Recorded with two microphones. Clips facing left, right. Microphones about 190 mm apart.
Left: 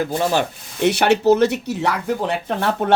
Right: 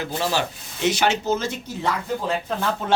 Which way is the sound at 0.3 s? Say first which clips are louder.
Left 5 dB; 60° left (ahead or behind).